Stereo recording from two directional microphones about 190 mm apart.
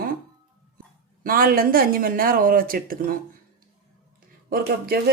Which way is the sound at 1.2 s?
50° right (ahead or behind).